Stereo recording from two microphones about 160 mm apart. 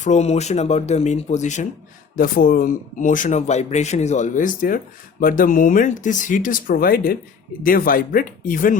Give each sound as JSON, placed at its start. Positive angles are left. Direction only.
{"t": 0.0, "sound": "speech", "side_deg": 45}
{"t": 2.1, "sound": "speech", "side_deg": 65}